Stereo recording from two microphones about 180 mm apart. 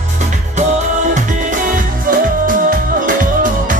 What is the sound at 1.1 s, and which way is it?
Music, 50° right (ahead or behind).